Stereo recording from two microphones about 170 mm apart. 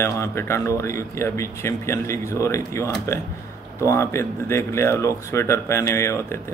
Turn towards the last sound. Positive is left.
turn(degrees=15)  # may be behind; listen again after turning